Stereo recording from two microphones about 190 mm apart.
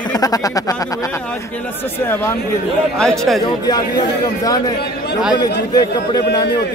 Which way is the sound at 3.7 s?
20° left (ahead or behind).